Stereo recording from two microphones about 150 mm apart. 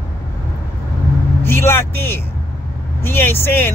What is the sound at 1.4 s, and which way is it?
Speech, 15° left (ahead or behind).